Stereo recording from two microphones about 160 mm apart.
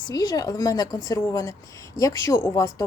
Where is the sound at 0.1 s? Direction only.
25° left (ahead or behind).